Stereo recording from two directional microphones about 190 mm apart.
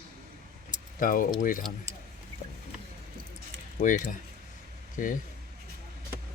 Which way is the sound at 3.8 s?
40° left (ahead or behind).